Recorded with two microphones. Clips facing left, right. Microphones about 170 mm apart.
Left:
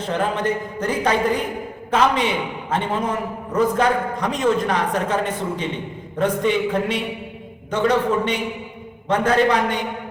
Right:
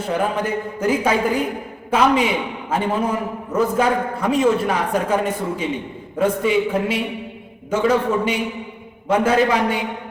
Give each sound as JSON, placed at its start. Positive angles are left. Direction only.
{"t": 0.0, "sound": "a man's voice", "side_deg": -10}